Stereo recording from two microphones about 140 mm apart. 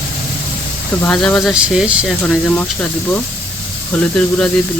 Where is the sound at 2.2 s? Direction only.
10° left (ahead or behind).